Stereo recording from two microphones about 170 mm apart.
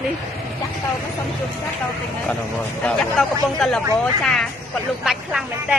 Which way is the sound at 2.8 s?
5° left (ahead or behind).